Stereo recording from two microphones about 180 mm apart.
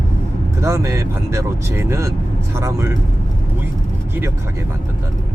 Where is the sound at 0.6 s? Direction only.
15° right (ahead or behind).